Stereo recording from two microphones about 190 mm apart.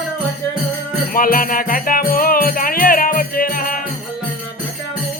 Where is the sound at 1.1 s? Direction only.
50° left (ahead or behind).